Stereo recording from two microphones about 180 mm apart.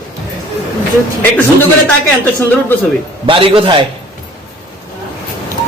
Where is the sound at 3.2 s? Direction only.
30° right (ahead or behind).